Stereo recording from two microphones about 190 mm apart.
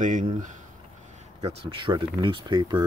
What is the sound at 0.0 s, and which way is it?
Speech, 45° right (ahead or behind).